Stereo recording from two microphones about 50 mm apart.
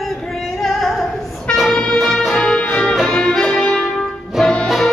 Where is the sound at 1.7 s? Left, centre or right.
Centre.